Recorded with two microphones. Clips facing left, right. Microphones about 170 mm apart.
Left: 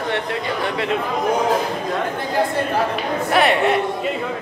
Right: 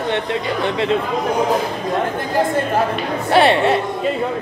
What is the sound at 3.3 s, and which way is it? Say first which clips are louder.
Speech: right 3 dB; 30° right (ahead or behind).